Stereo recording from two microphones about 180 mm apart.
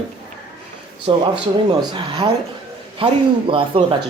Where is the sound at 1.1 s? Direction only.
30° right (ahead or behind).